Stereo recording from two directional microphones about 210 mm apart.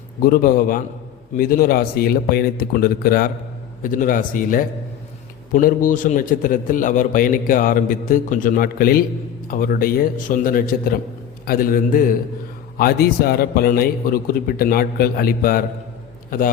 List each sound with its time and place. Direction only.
0.2 s a man's voice: 40° left (ahead or behind)